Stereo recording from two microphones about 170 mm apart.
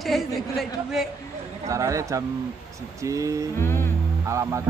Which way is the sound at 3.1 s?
20° right (ahead or behind).